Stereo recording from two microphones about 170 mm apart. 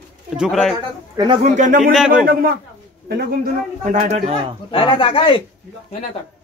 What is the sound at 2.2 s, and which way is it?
A man's voice, 60° right (ahead or behind).